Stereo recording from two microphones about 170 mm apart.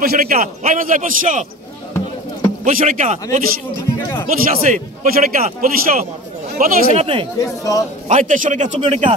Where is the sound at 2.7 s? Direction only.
50° right (ahead or behind).